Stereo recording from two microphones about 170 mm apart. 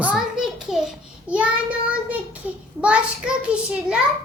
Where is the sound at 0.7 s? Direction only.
5° right (ahead or behind).